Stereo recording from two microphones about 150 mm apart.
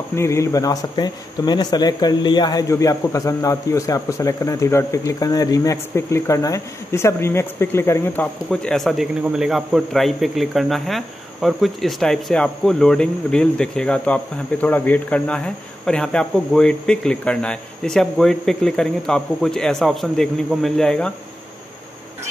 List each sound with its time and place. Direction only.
0.1 s speech: 20° left (ahead or behind)
8.5 s a man's voice: 5° left (ahead or behind)